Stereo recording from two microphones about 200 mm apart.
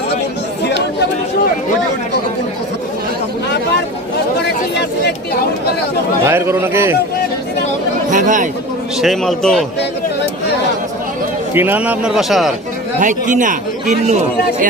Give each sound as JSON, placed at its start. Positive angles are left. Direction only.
{"t": 4.7, "sound": "a sound", "side_deg": 60}
{"t": 6.2, "sound": "a man's voice", "side_deg": -15}
{"t": 8.1, "sound": "speech", "side_deg": -40}
{"t": 9.0, "sound": "a man's voice", "side_deg": 0}
{"t": 11.5, "sound": "a man's voice", "side_deg": -10}
{"t": 13.0, "sound": "speech", "side_deg": -40}